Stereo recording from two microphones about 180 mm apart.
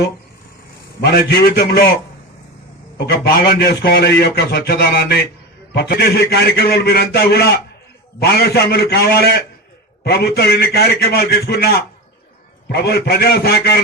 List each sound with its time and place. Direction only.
1.0 s a man's voice: 70° left (ahead or behind)
3.0 s a man's voice: 60° left (ahead or behind)